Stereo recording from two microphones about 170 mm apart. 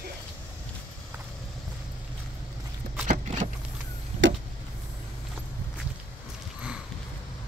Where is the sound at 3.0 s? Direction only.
45° right (ahead or behind).